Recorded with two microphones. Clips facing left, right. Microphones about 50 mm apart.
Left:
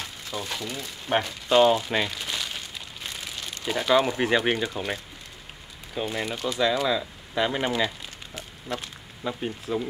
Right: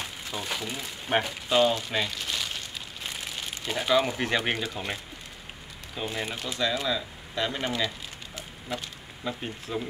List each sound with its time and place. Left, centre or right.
0.0 s speech: centre
1.6 s speech: centre
2.0 s a sound: centre
3.6 s speech: centre
5.9 s speech: centre
8.7 s speech: centre